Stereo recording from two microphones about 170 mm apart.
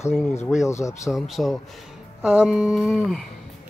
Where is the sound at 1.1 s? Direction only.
Centre (ahead or behind).